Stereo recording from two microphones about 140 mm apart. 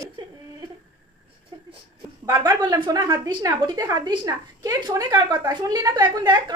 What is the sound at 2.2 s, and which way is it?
A woman's voice, 30° right (ahead or behind).